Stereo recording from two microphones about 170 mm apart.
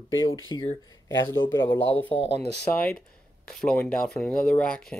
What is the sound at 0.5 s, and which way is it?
Speech, 20° left (ahead or behind).